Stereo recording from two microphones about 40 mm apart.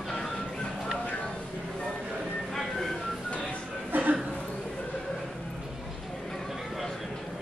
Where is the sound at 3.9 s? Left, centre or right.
Right.